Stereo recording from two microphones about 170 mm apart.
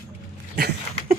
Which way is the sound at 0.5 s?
65° right (ahead or behind).